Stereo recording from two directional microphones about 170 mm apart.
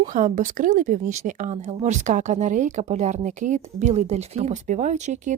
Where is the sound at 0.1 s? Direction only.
50° right (ahead or behind).